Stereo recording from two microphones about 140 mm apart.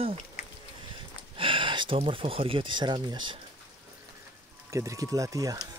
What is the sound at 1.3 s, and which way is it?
Speech, 40° right (ahead or behind).